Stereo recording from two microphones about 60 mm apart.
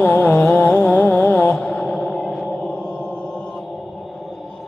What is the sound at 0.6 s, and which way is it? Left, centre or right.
Music, left.